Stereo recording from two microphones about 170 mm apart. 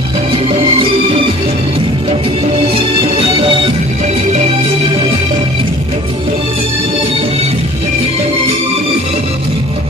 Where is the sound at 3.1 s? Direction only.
30° right (ahead or behind).